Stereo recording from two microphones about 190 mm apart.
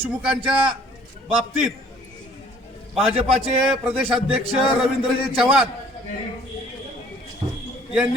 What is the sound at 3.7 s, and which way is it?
Speech, 5° right (ahead or behind).